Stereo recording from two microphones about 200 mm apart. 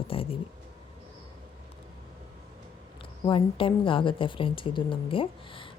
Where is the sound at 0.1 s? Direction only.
30° left (ahead or behind).